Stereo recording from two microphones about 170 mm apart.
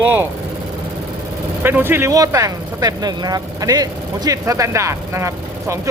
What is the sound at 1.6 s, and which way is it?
Speech, 15° right (ahead or behind).